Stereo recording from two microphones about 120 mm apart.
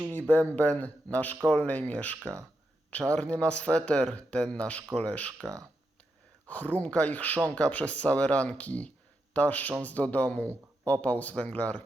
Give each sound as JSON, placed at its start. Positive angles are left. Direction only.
{"t": 0.2, "sound": "speech", "side_deg": 15}
{"t": 2.2, "sound": "speech", "side_deg": -25}
{"t": 2.9, "sound": "speech", "side_deg": 10}
{"t": 6.5, "sound": "speech", "side_deg": 15}